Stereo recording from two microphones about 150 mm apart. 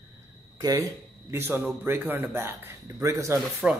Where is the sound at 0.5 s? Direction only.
25° right (ahead or behind).